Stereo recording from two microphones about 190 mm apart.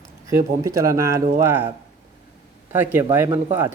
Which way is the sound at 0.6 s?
15° right (ahead or behind).